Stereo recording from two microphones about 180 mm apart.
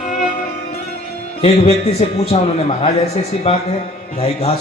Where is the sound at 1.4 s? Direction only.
35° left (ahead or behind).